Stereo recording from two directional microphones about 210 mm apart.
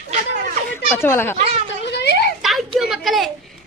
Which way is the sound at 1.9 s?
50° left (ahead or behind).